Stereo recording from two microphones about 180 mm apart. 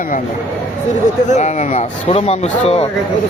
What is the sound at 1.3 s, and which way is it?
Speech, 40° left (ahead or behind).